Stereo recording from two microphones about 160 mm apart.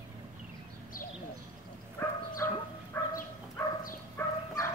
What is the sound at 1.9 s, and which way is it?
Dog, 15° left (ahead or behind).